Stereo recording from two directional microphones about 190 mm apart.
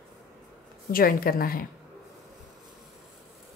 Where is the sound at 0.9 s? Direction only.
50° left (ahead or behind).